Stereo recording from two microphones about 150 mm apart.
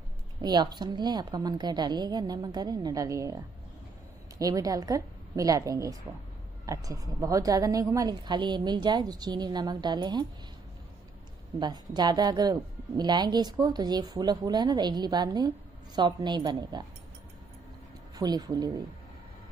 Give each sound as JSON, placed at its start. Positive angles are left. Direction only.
{"t": 0.4, "sound": "a woman's voice", "side_deg": -25}
{"t": 11.6, "sound": "a woman's voice", "side_deg": -30}
{"t": 18.1, "sound": "a woman's voice", "side_deg": -25}